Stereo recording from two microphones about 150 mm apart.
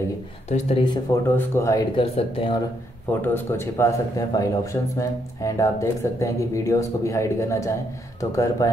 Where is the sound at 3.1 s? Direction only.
15° left (ahead or behind).